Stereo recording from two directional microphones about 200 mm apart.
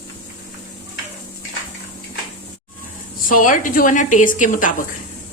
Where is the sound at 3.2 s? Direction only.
40° left (ahead or behind).